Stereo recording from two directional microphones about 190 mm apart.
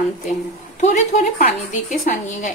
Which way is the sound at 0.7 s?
40° left (ahead or behind).